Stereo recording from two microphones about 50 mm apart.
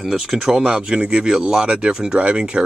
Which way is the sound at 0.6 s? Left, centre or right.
Centre.